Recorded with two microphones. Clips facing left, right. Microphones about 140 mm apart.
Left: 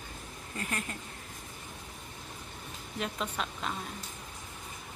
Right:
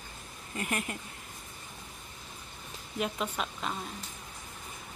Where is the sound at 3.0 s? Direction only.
5° right (ahead or behind).